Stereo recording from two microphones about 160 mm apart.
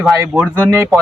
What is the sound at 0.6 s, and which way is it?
Speech, 15° right (ahead or behind).